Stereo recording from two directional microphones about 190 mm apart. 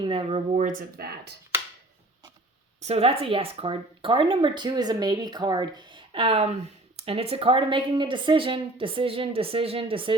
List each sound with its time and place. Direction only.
0.0 s speech: 25° right (ahead or behind)
0.6 s speech: 45° right (ahead or behind)
2.8 s speech: 30° right (ahead or behind)